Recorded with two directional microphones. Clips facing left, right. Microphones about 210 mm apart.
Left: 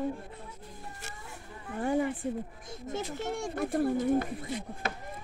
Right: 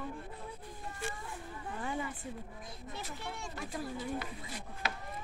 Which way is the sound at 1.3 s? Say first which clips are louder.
Even; 40° left (ahead or behind).